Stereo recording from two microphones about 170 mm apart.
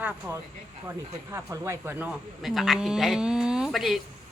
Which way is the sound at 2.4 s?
Centre (ahead or behind).